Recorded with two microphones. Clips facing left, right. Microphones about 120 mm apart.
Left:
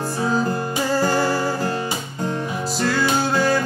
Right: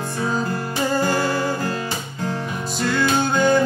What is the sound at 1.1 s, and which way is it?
Music, 35° left (ahead or behind).